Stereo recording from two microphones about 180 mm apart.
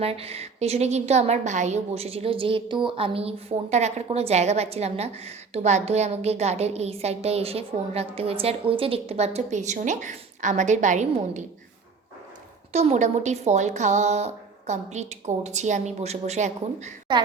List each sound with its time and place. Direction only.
0.0 s a woman's voice: 35° right (ahead or behind)
12.7 s a woman's voice: 40° right (ahead or behind)
17.1 s a woman's voice: 25° right (ahead or behind)